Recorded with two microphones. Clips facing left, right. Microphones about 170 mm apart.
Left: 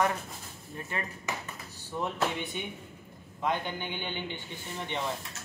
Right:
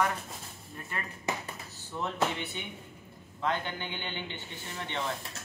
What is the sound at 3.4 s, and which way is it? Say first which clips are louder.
A man's voice: left 1 dB; 15° left (ahead or behind).